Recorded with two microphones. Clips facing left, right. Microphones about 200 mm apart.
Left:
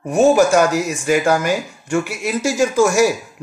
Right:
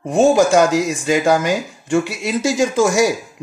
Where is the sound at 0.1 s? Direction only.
20° right (ahead or behind).